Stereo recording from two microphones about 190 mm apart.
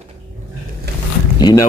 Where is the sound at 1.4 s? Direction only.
15° left (ahead or behind).